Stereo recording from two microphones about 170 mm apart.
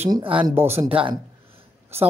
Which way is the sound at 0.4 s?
10° right (ahead or behind).